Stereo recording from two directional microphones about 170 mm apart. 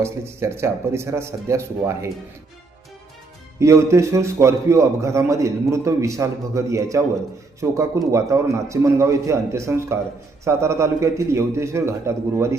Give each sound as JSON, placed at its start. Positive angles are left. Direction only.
{"t": 0.0, "sound": "a man's voice", "side_deg": -15}
{"t": 3.6, "sound": "a man's voice", "side_deg": -15}